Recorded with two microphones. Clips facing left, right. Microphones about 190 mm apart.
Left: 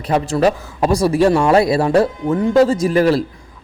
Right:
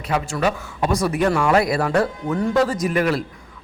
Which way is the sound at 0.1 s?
35° left (ahead or behind).